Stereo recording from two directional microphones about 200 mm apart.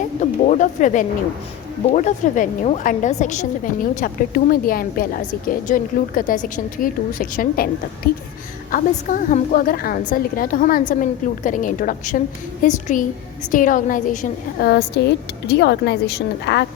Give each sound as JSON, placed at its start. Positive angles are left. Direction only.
{"t": 0.2, "sound": "a woman's voice", "side_deg": 35}
{"t": 14.7, "sound": "a woman's voice", "side_deg": 55}